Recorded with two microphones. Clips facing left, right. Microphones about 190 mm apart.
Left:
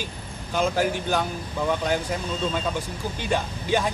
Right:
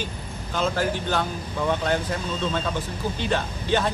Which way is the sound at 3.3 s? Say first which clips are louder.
Left 1 dB; 10° left (ahead or behind).